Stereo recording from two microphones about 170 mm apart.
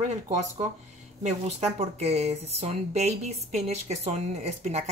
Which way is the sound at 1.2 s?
40° right (ahead or behind).